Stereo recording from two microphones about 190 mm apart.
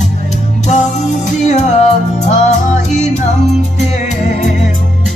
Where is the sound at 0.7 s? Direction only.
40° left (ahead or behind).